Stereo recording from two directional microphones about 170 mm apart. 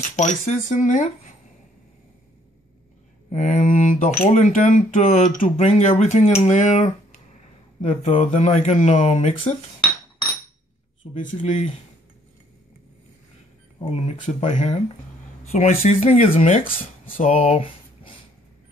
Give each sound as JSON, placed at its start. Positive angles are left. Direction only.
{"t": 0.1, "sound": "speech", "side_deg": 45}
{"t": 3.3, "sound": "speech", "side_deg": 45}
{"t": 11.2, "sound": "speech", "side_deg": 40}
{"t": 13.7, "sound": "speech", "side_deg": 35}